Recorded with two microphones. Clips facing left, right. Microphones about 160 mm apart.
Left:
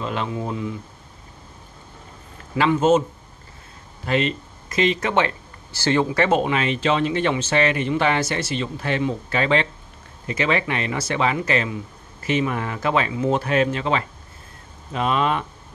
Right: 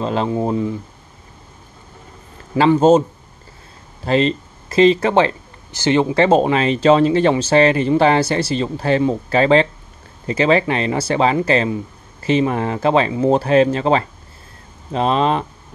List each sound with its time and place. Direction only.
0.0 s speech: 35° right (ahead or behind)
2.5 s speech: 30° right (ahead or behind)
4.0 s speech: 30° right (ahead or behind)
5.7 s speech: 20° right (ahead or behind)